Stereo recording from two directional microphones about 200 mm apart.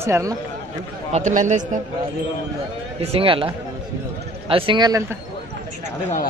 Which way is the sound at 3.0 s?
30° right (ahead or behind).